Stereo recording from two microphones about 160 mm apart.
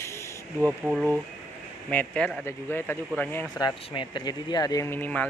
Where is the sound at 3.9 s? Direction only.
30° left (ahead or behind); by 5.3 s 10° left (ahead or behind).